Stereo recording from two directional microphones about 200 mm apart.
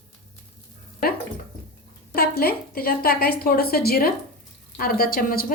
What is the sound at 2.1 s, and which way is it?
A woman's voice, 50° left (ahead or behind).